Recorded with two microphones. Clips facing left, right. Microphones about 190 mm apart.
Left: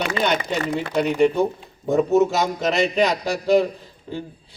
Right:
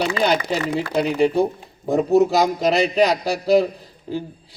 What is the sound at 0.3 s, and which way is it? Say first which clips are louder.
A man's voice: right 2 dB; 35° right (ahead or behind).